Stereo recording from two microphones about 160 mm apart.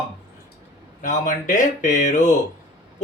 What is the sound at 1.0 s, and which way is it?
Speech, 50° left (ahead or behind).